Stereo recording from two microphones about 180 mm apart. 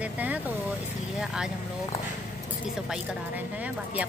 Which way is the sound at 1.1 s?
Centre (ahead or behind).